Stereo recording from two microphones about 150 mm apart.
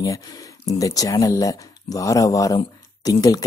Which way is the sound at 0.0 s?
25° left (ahead or behind).